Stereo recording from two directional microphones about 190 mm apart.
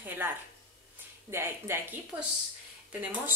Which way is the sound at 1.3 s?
10° right (ahead or behind).